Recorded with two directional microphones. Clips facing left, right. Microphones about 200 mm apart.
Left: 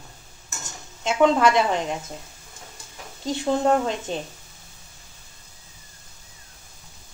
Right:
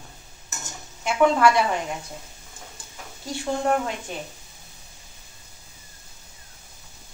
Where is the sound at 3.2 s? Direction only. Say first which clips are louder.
Left 4 dB; 25° left (ahead or behind).